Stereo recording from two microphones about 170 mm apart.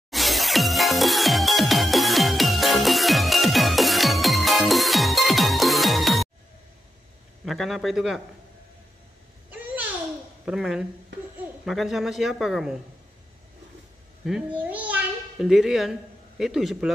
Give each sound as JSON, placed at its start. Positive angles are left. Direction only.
{"t": 0.1, "sound": "music", "side_deg": 0}
{"t": 7.4, "sound": "a man's voice", "side_deg": 0}
{"t": 10.4, "sound": "speech", "side_deg": -5}
{"t": 14.2, "sound": "a child's voice", "side_deg": -5}